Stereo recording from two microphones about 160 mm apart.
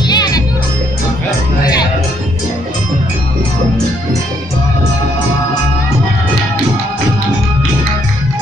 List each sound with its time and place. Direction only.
0.1 s music: 25° left (ahead or behind)